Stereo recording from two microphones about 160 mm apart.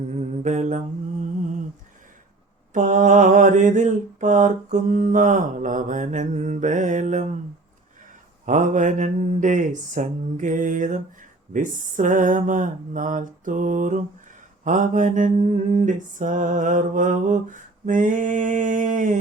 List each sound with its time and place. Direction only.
0.2 s mantra: 45° right (ahead or behind)
2.7 s mantra: 55° right (ahead or behind)
8.4 s mantra: 50° right (ahead or behind)